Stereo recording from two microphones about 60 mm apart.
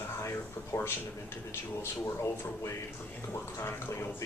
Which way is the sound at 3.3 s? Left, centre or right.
Left.